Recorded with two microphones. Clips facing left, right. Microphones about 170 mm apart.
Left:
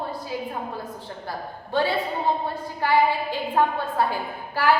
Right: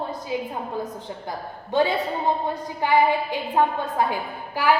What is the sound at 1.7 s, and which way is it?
A woman's voice, 20° right (ahead or behind).